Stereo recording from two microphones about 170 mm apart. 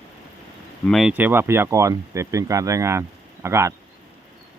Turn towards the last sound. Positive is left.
turn(degrees=-15)  # may be behind; listen again after turning